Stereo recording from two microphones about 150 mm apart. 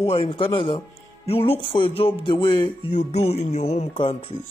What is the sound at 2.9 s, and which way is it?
Music, 45° left (ahead or behind).